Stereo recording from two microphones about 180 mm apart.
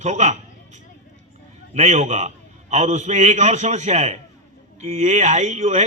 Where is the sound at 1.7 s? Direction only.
40° right (ahead or behind).